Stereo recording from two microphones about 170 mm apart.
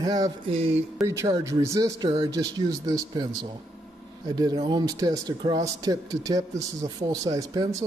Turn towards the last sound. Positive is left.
turn(degrees=-20)  # may be behind; listen again after turning